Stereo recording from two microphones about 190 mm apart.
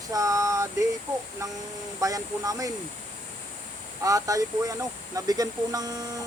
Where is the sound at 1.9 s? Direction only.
15° right (ahead or behind).